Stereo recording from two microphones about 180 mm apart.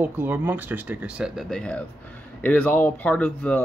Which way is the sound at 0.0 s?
10° right (ahead or behind).